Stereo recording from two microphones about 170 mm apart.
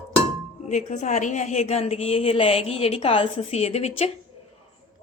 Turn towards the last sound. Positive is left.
turn(degrees=40)  # may be behind; listen again after turning